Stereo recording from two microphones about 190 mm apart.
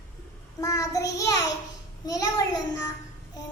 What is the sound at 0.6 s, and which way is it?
Child singing, 20° left (ahead or behind).